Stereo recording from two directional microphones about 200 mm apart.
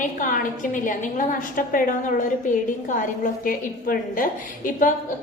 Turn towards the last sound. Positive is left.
turn(degrees=45)  # may be behind; listen again after turning